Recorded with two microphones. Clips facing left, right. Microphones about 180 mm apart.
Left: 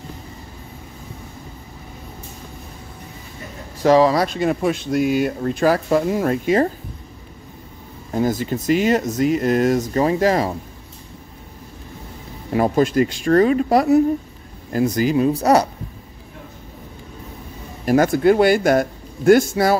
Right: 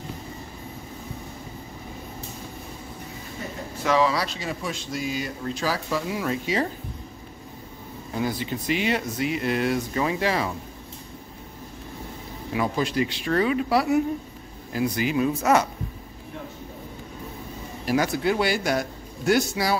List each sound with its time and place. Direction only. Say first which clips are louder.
3.8 s speech: left 8 dB; 40° left (ahead or behind)
8.1 s speech: left 7 dB; 45° left (ahead or behind)
12.5 s speech: left 8 dB; 45° left (ahead or behind)
17.8 s speech: left 8 dB; 50° left (ahead or behind)